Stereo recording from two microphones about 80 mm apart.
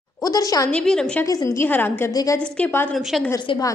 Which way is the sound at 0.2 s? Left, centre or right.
Left.